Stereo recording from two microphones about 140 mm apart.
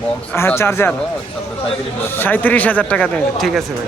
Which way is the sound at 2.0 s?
15° left (ahead or behind).